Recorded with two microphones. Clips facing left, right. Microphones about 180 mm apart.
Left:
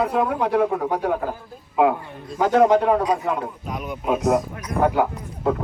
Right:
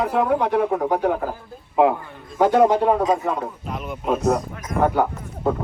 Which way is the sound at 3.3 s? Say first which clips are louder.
Even; centre (ahead or behind).